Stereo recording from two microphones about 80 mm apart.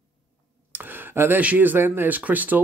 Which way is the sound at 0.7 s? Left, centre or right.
Right.